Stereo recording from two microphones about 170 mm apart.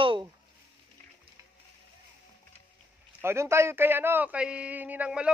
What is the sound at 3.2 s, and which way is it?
A man's voice, 15° right (ahead or behind).